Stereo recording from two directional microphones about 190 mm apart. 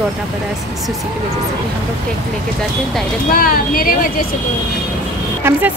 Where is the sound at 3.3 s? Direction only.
50° left (ahead or behind).